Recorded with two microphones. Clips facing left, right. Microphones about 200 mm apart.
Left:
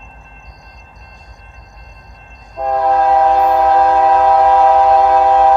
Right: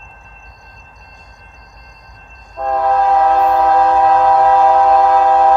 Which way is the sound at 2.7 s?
Centre (ahead or behind).